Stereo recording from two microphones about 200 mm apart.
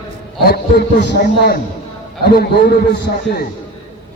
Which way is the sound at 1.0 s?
55° left (ahead or behind).